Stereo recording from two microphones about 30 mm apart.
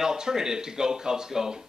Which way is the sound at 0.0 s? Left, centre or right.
Centre.